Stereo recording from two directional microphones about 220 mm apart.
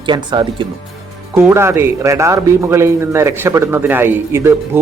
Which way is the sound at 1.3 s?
10° right (ahead or behind).